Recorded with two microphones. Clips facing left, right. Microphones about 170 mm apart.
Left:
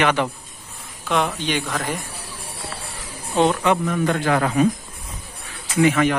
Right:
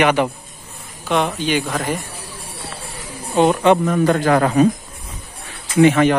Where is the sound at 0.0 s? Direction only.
15° right (ahead or behind).